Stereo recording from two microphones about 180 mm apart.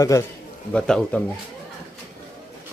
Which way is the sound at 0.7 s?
5° left (ahead or behind).